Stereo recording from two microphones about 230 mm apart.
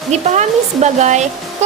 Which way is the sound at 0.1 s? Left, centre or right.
Right.